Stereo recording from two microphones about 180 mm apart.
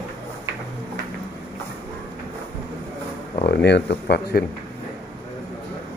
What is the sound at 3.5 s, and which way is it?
Speech, 70° left (ahead or behind).